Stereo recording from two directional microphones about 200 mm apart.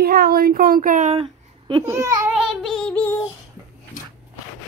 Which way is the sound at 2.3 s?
Centre (ahead or behind).